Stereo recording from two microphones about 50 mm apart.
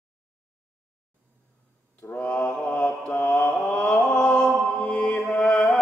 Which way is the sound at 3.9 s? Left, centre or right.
Centre.